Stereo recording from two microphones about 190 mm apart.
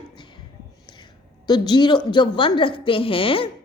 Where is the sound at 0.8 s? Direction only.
25° left (ahead or behind).